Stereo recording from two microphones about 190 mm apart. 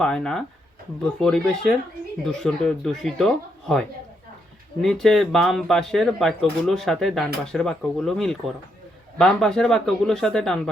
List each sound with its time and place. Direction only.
0.0 s speech: 5° left (ahead or behind)